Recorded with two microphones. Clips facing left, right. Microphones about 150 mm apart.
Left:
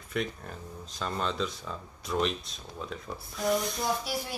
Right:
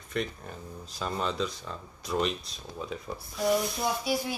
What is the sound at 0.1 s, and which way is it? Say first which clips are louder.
A woman's voice: even; centre (ahead or behind).